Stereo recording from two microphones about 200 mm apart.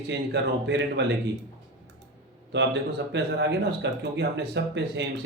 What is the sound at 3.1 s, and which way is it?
Speech, 60° right (ahead or behind).